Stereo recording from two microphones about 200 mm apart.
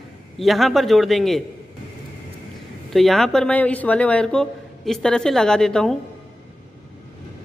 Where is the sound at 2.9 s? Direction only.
Centre (ahead or behind).